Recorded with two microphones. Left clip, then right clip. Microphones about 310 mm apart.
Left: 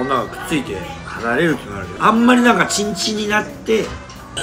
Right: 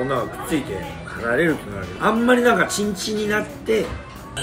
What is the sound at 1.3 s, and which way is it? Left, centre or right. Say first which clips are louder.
Speech: left 2 dB; centre.